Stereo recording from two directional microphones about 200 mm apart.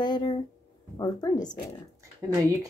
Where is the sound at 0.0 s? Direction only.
20° left (ahead or behind).